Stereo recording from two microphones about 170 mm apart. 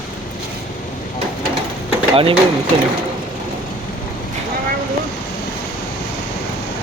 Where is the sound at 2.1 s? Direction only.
30° right (ahead or behind).